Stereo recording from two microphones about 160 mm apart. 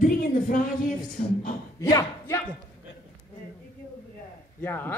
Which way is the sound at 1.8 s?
20° left (ahead or behind).